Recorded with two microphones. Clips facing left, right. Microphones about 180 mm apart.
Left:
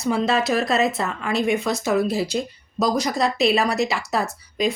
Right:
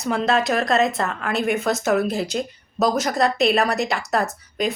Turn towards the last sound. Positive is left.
turn(degrees=0)  # may be behind; listen again after turning